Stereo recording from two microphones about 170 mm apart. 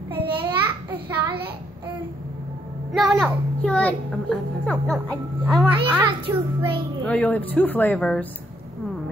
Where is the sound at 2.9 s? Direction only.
Centre (ahead or behind).